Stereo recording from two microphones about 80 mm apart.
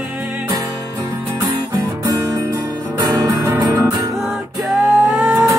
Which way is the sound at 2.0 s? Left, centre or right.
Right.